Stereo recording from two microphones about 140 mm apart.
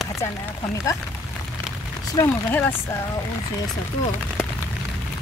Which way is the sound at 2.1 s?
15° left (ahead or behind).